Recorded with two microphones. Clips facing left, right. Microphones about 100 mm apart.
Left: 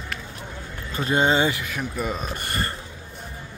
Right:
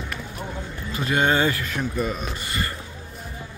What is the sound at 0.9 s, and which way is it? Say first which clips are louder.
Speech: left 1 dB; 35° left (ahead or behind).